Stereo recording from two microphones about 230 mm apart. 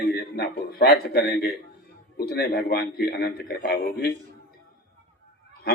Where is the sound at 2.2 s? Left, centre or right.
Left.